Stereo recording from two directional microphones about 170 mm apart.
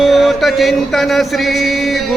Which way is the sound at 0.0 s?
Centre (ahead or behind).